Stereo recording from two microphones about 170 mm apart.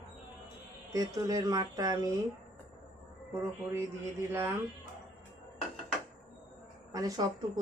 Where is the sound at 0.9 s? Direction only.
20° right (ahead or behind).